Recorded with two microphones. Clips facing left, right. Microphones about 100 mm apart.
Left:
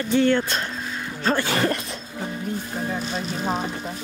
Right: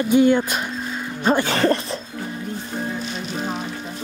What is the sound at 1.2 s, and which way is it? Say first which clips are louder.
Music: right 4 dB; 15° right (ahead or behind).